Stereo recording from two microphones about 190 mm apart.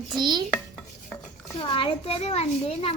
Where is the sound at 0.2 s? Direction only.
25° right (ahead or behind).